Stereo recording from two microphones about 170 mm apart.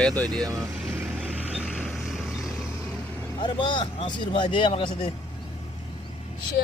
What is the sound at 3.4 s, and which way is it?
Speech, 30° left (ahead or behind).